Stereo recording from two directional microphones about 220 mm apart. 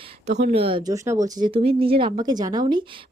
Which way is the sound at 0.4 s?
25° right (ahead or behind).